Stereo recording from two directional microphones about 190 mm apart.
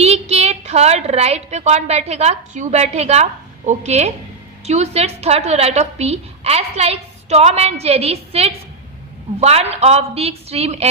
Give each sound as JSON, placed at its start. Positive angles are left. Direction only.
{"t": 0.0, "sound": "a woman's voice", "side_deg": -35}